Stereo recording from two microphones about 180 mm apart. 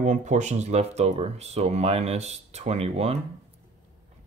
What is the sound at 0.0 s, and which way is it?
Speech, 40° right (ahead or behind).